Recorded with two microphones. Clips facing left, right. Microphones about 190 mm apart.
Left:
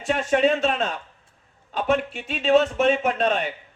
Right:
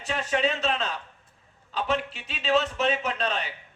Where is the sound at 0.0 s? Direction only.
50° left (ahead or behind).